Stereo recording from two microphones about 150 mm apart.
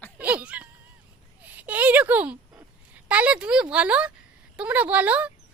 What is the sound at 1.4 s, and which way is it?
Speech, 10° right (ahead or behind).